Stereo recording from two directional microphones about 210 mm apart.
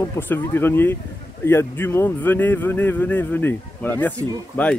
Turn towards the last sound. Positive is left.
turn(degrees=5)  # may be behind; listen again after turning